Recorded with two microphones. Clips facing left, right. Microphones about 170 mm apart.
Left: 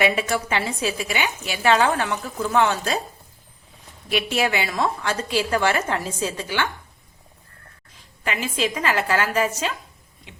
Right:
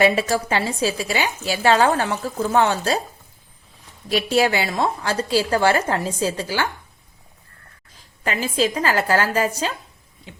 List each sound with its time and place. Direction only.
0.0 s a woman's voice: 35° right (ahead or behind)
4.1 s a woman's voice: 35° right (ahead or behind)
8.2 s a woman's voice: 35° right (ahead or behind)